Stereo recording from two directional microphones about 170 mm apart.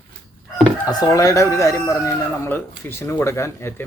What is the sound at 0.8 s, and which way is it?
Speech, 20° left (ahead or behind).